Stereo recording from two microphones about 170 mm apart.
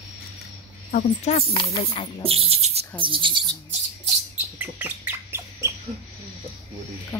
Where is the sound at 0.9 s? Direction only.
40° left (ahead or behind).